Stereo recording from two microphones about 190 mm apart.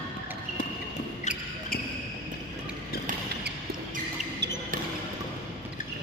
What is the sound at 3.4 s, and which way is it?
Basketball bounce, 60° right (ahead or behind).